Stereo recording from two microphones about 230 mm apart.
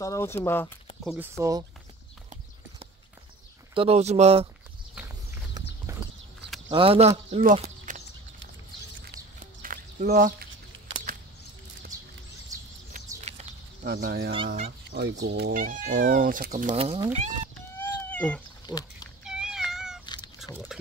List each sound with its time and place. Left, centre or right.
0.0 s speech: centre
1.0 s speech: centre
3.7 s speech: right
5.9 s horse: centre
6.7 s speech: right
9.1 s a sound: right
13.3 s a sound: right
13.8 s speech: right
17.7 s cat: centre
20.5 s speech: centre